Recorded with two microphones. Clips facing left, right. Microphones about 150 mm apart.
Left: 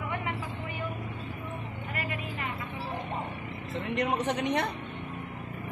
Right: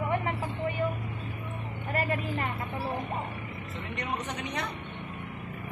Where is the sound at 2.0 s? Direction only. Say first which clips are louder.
Right 7 dB; 35° right (ahead or behind).